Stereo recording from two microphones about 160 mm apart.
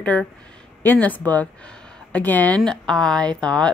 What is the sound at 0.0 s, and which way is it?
Speech, 10° left (ahead or behind).